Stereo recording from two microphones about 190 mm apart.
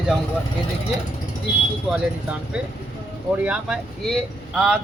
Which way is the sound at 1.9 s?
5° right (ahead or behind).